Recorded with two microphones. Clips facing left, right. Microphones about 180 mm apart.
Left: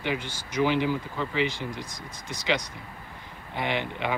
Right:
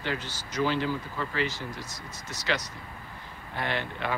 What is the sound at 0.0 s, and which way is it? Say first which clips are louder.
Speech: left 3 dB; 15° left (ahead or behind).